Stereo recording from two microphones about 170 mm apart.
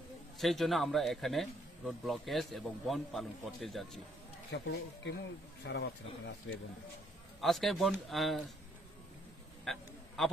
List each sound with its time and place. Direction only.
0.4 s speech: centre (ahead or behind)
4.5 s speech: 90° left
7.3 s speech: centre (ahead or behind)
9.7 s a sound: centre (ahead or behind)